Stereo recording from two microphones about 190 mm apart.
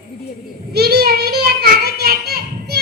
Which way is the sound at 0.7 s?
55° right (ahead or behind).